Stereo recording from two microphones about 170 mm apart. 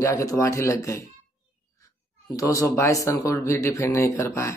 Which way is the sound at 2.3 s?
20° left (ahead or behind).